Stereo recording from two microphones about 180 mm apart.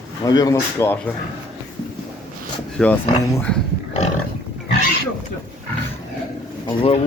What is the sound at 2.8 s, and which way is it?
Speech, centre (ahead or behind).